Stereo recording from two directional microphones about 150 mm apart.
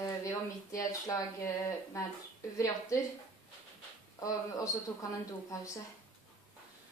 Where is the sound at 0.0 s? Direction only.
20° left (ahead or behind).